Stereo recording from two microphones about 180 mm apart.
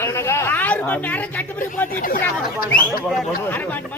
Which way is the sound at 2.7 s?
10° left (ahead or behind).